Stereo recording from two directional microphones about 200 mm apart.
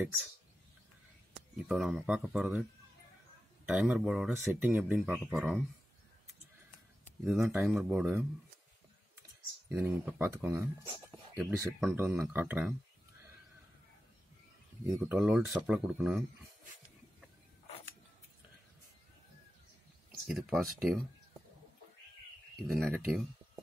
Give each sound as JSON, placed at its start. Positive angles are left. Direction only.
{"t": 0.0, "sound": "speech", "side_deg": -10}
{"t": 1.6, "sound": "speech", "side_deg": -5}
{"t": 3.6, "sound": "speech", "side_deg": -5}
{"t": 7.2, "sound": "speech", "side_deg": 0}
{"t": 9.7, "sound": "speech", "side_deg": -5}
{"t": 14.9, "sound": "speech", "side_deg": -5}
{"t": 20.1, "sound": "speech", "side_deg": 0}
{"t": 22.6, "sound": "speech", "side_deg": 0}